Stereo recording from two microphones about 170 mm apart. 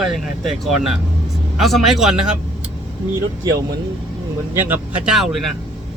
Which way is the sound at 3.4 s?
20° right (ahead or behind).